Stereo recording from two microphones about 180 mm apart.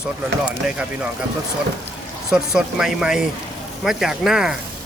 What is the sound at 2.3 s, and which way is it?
Speech, 5° right (ahead or behind).